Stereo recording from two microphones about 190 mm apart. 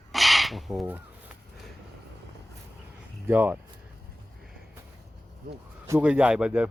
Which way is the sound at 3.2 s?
10° right (ahead or behind).